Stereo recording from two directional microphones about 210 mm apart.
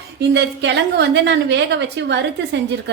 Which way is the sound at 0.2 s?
55° right (ahead or behind).